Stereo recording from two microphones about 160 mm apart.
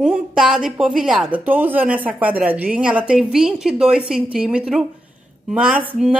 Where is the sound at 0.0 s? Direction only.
5° right (ahead or behind).